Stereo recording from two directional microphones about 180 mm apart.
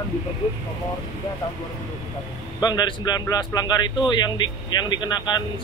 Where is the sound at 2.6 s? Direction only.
20° left (ahead or behind).